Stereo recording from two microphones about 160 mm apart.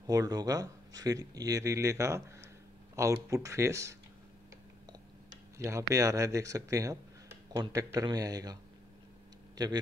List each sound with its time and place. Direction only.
0.0 s speech: 20° right (ahead or behind)
5.6 s speech: 20° right (ahead or behind)
9.6 s a man's voice: 25° right (ahead or behind)